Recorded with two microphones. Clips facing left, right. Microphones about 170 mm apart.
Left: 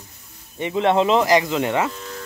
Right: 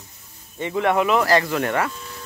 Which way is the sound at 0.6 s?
20° left (ahead or behind).